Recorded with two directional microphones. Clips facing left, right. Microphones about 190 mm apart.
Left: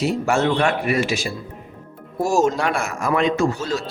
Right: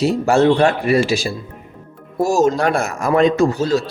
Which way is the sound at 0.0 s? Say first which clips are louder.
Right 5 dB; 35° right (ahead or behind).